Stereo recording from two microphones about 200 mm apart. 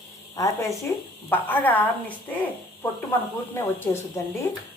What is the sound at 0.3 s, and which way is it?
Speech, 15° left (ahead or behind).